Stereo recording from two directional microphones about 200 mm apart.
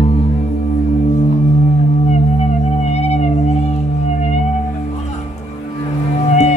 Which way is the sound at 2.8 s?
35° left (ahead or behind).